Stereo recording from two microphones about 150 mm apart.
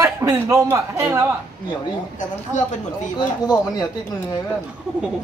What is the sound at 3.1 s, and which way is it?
Speech, 25° left (ahead or behind).